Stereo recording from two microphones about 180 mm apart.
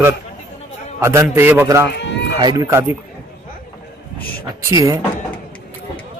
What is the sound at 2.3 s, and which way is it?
Speech, 20° right (ahead or behind).